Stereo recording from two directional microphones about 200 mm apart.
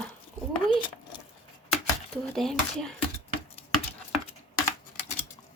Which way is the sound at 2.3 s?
Centre (ahead or behind).